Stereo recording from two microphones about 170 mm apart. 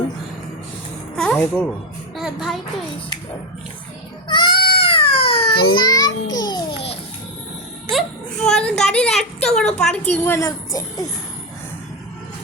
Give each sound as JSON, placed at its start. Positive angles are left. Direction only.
{"t": 1.1, "sound": "speech", "side_deg": 5}
{"t": 2.1, "sound": "a child's voice", "side_deg": 0}
{"t": 4.3, "sound": "goat", "side_deg": 30}
{"t": 6.4, "sound": "music", "side_deg": 25}
{"t": 7.9, "sound": "a sound", "side_deg": 5}
{"t": 8.8, "sound": "a woman's voice", "side_deg": 5}